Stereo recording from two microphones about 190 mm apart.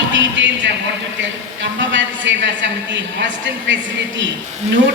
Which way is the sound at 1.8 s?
75° right (ahead or behind).